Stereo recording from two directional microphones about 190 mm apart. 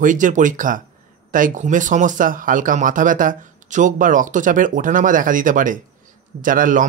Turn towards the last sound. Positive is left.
turn(degrees=-45)  # may be behind; listen again after turning